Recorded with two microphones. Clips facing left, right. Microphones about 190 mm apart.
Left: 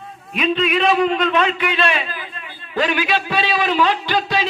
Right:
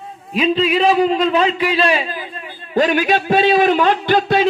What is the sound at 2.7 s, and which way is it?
A man's voice, 45° right (ahead or behind).